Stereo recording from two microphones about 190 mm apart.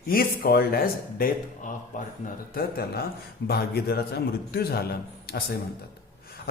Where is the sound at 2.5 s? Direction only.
55° left (ahead or behind).